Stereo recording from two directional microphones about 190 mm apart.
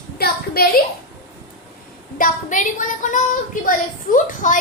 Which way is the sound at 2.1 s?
45° left (ahead or behind).